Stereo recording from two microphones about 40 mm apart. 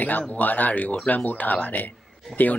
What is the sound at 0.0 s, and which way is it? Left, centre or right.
Speech, left.